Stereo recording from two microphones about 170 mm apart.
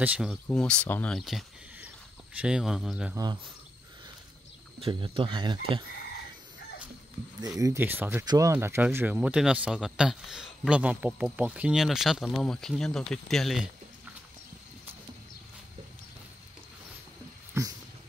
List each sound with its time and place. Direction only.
0.0 s speech: 5° right (ahead or behind)
0.5 s speech: 5° left (ahead or behind)
4.7 s speech: 30° right (ahead or behind)
7.3 s speech: 20° right (ahead or behind); by 13.7 s centre (ahead or behind)